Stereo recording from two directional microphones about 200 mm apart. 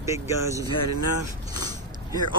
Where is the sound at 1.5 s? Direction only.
20° right (ahead or behind).